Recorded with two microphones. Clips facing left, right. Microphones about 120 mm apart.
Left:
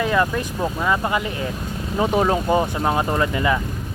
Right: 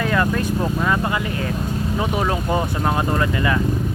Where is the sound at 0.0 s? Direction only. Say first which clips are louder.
Even; 20° left (ahead or behind).